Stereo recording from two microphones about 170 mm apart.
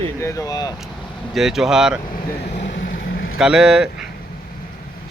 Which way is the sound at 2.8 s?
55° left (ahead or behind).